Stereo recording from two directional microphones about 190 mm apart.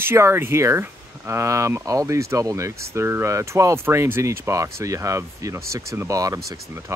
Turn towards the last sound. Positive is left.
turn(degrees=-15)  # may be behind; listen again after turning